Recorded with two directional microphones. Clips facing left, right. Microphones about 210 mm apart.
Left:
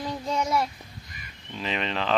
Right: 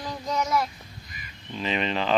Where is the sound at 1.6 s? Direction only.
Centre (ahead or behind).